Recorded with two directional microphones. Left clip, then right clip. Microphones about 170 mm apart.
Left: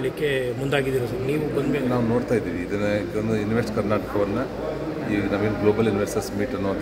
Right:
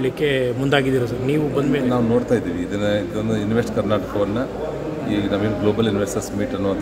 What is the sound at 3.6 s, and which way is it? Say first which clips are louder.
Speech: right 5 dB; 15° right (ahead or behind).